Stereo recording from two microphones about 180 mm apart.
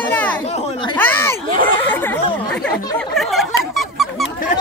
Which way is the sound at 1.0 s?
10° left (ahead or behind).